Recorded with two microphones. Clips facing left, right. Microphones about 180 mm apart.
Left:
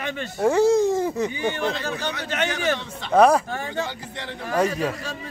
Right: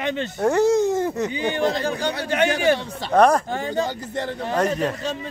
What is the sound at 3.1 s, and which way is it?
Speech, 5° left (ahead or behind).